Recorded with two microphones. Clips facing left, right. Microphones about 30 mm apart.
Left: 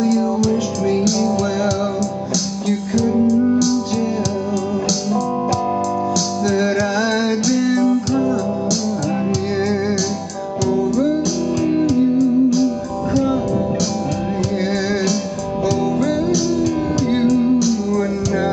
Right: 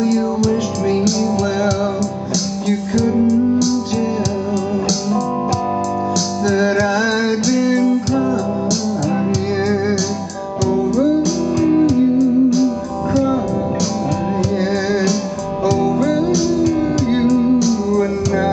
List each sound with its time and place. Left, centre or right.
0.4 s music: centre
2.7 s music: centre
6.4 s music: centre
11.8 s music: centre
14.6 s music: centre